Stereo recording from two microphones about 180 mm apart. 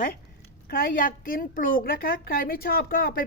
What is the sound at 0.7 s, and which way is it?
A woman's voice, 50° left (ahead or behind).